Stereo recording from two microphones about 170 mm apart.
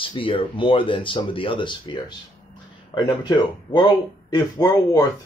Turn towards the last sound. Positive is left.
turn(degrees=20)  # may be behind; listen again after turning